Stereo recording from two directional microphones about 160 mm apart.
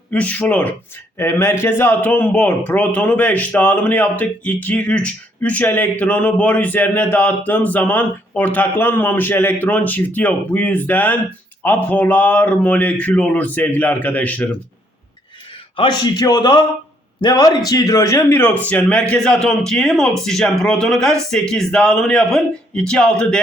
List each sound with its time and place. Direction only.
0.1 s a man's voice: 10° left (ahead or behind)
15.7 s a man's voice: 30° left (ahead or behind); by 23.4 s 5° left (ahead or behind)